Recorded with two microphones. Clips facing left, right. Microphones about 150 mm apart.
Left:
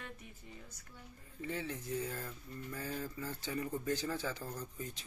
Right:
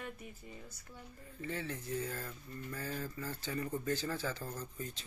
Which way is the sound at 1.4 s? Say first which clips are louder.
Even; 15° left (ahead or behind).